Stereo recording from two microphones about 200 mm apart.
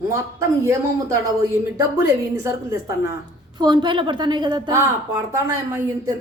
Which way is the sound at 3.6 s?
20° right (ahead or behind).